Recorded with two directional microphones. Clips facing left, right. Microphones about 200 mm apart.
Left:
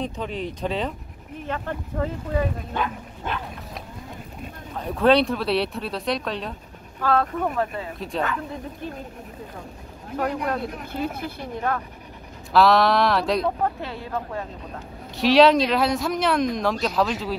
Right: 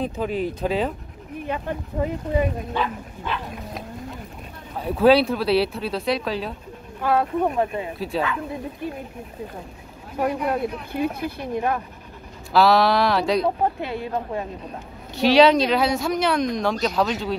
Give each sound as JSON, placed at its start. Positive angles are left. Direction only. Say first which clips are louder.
{"t": 0.0, "sound": "speech", "louder": "right 4 dB", "side_deg": -5}
{"t": 3.3, "sound": "dog", "louder": "right 1 dB", "side_deg": 45}
{"t": 4.7, "sound": "speech", "louder": "right 2 dB", "side_deg": -5}
{"t": 7.0, "sound": "speech", "louder": "right 2 dB", "side_deg": -15}
{"t": 8.1, "sound": "speech", "louder": "right 1 dB", "side_deg": -5}
{"t": 10.1, "sound": "speech", "louder": "right 2 dB", "side_deg": -10}
{"t": 12.5, "sound": "speech", "louder": "even", "side_deg": 0}
{"t": 13.7, "sound": "speech", "louder": "right 3 dB", "side_deg": -15}
{"t": 15.1, "sound": "speech", "louder": "right 1 dB", "side_deg": 0}